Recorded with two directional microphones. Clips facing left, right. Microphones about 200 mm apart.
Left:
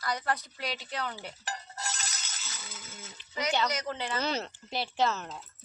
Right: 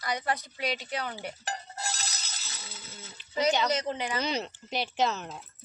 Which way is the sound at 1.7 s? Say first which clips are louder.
Right 2 dB; 30° right (ahead or behind).